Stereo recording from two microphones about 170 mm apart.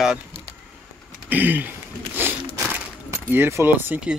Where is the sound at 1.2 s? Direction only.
10° right (ahead or behind).